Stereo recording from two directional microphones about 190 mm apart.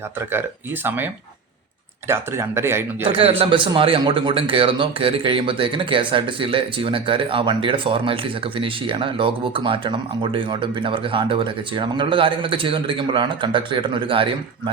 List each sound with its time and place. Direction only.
2.0 s speech: 15° right (ahead or behind)
3.0 s speech: 30° right (ahead or behind)